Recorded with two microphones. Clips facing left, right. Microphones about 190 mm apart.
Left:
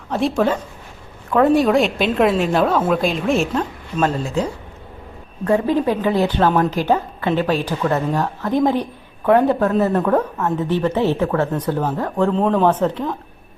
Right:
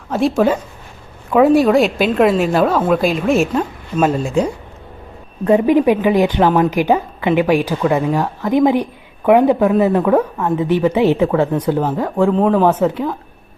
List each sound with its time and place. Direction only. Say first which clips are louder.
0.1 s a woman's voice: right 3 dB; 5° right (ahead or behind)